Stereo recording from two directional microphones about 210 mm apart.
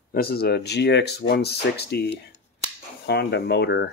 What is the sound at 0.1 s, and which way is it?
Speech, 45° left (ahead or behind).